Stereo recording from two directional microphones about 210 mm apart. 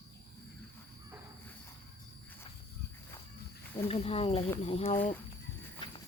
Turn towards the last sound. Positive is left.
turn(degrees=30)  # may be behind; listen again after turning